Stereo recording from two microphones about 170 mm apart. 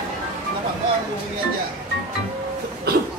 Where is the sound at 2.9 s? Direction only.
70° right (ahead or behind).